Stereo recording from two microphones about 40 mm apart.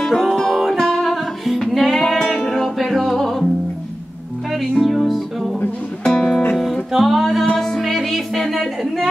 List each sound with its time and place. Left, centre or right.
0.4 s music: centre
1.1 s music: centre
4.5 s music: centre
6.0 s music: centre
6.9 s music: centre